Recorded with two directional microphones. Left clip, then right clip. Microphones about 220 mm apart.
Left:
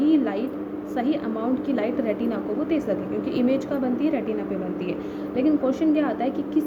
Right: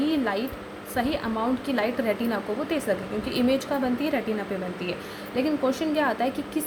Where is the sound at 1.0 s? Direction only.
25° right (ahead or behind).